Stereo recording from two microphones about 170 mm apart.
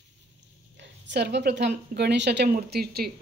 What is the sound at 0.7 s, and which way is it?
A woman's voice, 90° right.